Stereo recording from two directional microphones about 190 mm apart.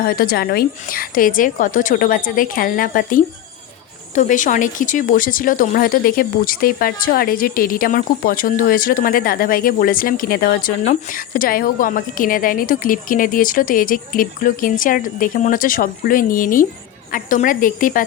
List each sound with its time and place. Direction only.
0.0 s speech: 55° left (ahead or behind)